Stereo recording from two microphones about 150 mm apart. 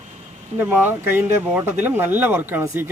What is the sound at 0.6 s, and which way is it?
Speech, 15° right (ahead or behind).